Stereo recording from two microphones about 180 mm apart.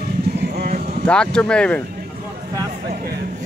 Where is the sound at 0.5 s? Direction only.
55° right (ahead or behind).